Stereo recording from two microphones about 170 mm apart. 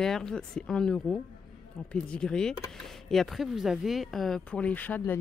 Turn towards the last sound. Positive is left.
turn(degrees=10)  # may be behind; listen again after turning